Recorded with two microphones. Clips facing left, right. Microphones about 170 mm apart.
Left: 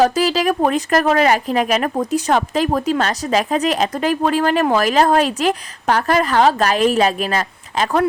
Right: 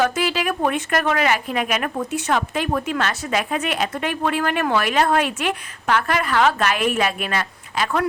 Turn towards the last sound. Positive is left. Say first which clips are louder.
# left 4 dB
turn(degrees=40)  # may be behind; listen again after turning